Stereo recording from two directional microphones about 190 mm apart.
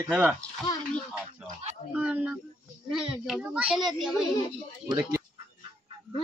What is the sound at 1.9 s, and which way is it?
A child's voice, 5° right (ahead or behind).